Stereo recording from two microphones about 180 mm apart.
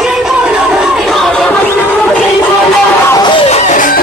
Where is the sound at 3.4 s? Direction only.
40° left (ahead or behind).